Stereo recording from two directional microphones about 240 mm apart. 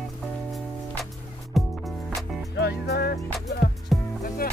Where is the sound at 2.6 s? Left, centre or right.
Left.